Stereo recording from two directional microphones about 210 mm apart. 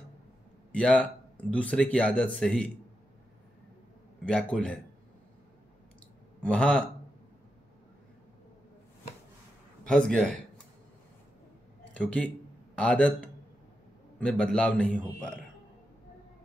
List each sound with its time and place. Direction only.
0.7 s speech: 5° left (ahead or behind)
4.2 s speech: 5° left (ahead or behind)
6.4 s speech: 5° left (ahead or behind)
9.8 s speech: 5° left (ahead or behind)
11.9 s speech: 5° left (ahead or behind)
14.4 s speech: 5° left (ahead or behind)